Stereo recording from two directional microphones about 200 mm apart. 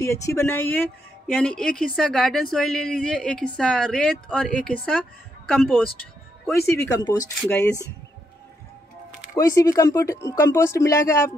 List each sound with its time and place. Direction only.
0.0 s a woman's voice: 15° left (ahead or behind)
6.5 s speech: 15° left (ahead or behind)
7.4 s speech: 5° left (ahead or behind)
9.3 s speech: 15° left (ahead or behind)